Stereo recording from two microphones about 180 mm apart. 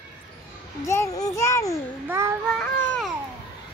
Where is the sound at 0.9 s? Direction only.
20° left (ahead or behind).